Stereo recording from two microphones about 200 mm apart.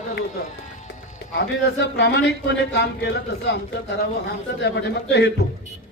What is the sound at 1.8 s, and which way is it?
A man's voice, 60° left (ahead or behind).